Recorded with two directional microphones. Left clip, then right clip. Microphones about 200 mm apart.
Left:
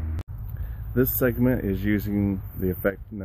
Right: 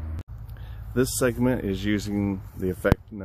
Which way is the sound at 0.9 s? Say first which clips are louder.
Even; 5° right (ahead or behind).